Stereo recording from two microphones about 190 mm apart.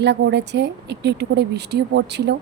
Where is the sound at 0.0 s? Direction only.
65° right (ahead or behind).